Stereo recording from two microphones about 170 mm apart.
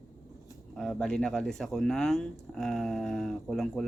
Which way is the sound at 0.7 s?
Centre (ahead or behind).